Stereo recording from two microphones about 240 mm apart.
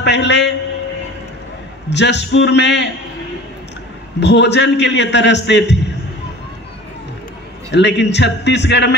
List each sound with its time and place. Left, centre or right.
0.0 s a man's voice: left
1.9 s a man's voice: left
4.2 s a man's voice: left
7.7 s a man's voice: left